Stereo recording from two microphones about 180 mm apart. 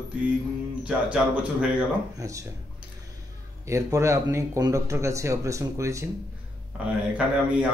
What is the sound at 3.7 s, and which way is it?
Speech, 15° right (ahead or behind).